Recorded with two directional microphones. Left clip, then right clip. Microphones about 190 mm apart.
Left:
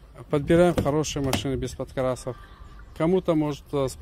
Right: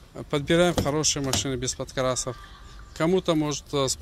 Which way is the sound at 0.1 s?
20° left (ahead or behind).